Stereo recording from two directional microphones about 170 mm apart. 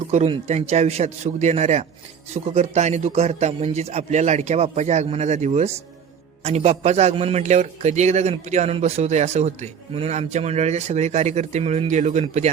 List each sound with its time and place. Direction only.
0.1 s a man's voice: 40° right (ahead or behind)